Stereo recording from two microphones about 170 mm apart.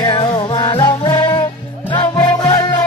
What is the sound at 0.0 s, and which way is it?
Music, 30° left (ahead or behind).